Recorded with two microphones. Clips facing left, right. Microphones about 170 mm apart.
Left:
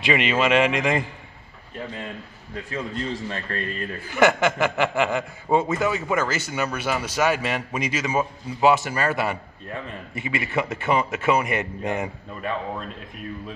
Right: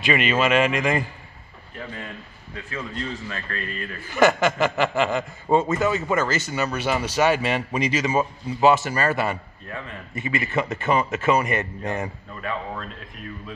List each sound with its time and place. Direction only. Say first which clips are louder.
0.0 s a man's voice: even; 20° left (ahead or behind)
2.7 s a man's voice: left 2 dB; 30° left (ahead or behind)
4.1 s a man's voice: right 1 dB; 15° left (ahead or behind)